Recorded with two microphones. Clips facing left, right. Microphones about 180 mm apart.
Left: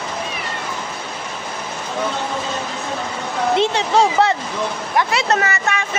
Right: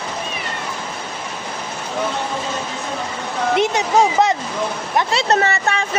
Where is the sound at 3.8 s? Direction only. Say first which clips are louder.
Even; 15° right (ahead or behind).